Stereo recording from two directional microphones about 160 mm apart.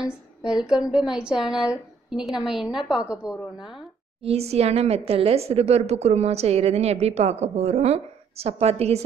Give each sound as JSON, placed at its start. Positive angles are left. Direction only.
{"t": 0.0, "sound": "speech", "side_deg": -5}
{"t": 4.2, "sound": "a woman's voice", "side_deg": -40}